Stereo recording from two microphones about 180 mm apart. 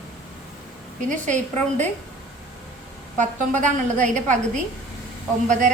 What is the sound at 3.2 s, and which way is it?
A woman's voice, 45° right (ahead or behind).